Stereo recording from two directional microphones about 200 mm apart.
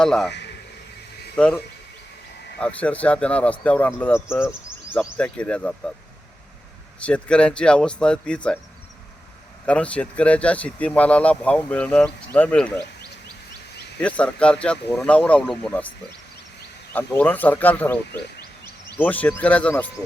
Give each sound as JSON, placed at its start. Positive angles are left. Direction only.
{"t": 0.0, "sound": "speech", "side_deg": 5}
{"t": 0.3, "sound": "a sound", "side_deg": 60}
{"t": 1.4, "sound": "speech", "side_deg": 5}
{"t": 2.6, "sound": "speech", "side_deg": 5}
{"t": 7.0, "sound": "speech", "side_deg": 5}
{"t": 9.6, "sound": "speech", "side_deg": 5}
{"t": 14.0, "sound": "speech", "side_deg": 5}
{"t": 16.9, "sound": "speech", "side_deg": 10}